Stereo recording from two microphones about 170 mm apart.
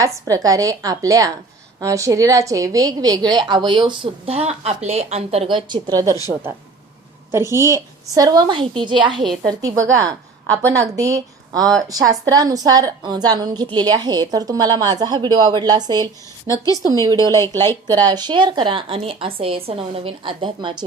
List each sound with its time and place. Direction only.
0.3 s a woman's voice: 20° right (ahead or behind)
7.3 s a woman's voice: 15° right (ahead or behind)
16.5 s a woman's voice: 20° left (ahead or behind)
16.8 s a woman's voice: 20° right (ahead or behind)